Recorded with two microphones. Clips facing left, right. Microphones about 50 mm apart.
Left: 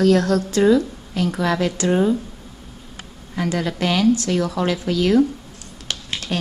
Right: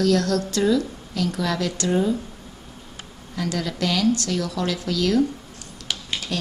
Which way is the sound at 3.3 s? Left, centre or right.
Left.